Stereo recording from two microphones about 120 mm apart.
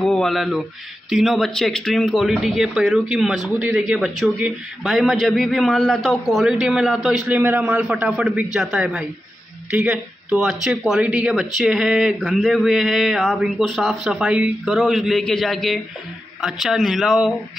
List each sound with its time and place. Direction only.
0.0 s mantra: centre (ahead or behind)
1.1 s speech: centre (ahead or behind)
7.3 s a man's voice: 15° right (ahead or behind)